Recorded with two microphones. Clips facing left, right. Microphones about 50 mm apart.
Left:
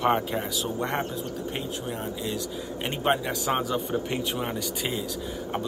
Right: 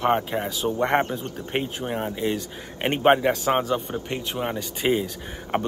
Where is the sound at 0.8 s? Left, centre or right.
Right.